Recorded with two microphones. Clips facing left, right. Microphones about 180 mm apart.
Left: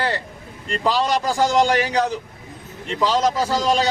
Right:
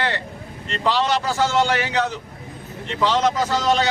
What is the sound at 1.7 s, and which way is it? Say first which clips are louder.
Speech: left 2 dB; 40° left (ahead or behind).